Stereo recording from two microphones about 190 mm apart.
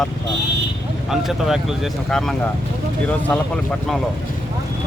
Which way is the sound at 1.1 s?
Centre (ahead or behind).